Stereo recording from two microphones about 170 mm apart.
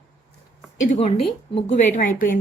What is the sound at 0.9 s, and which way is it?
A woman's voice, 35° left (ahead or behind).